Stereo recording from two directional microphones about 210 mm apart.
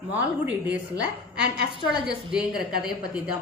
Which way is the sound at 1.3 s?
50° right (ahead or behind).